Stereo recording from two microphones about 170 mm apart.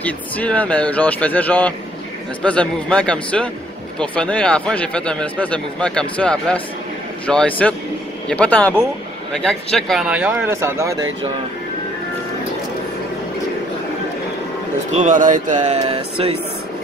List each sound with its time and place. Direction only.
0.0 s a man's voice: 10° left (ahead or behind); by 11.1 s 15° right (ahead or behind)
14.9 s speech: 45° right (ahead or behind)